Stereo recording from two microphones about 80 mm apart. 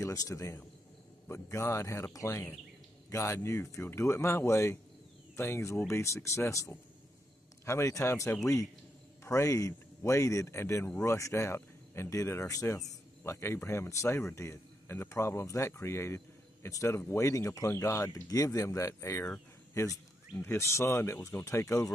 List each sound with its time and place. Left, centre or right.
0.0 s speech: left